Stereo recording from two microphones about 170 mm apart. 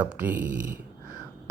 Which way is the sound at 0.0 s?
10° right (ahead or behind).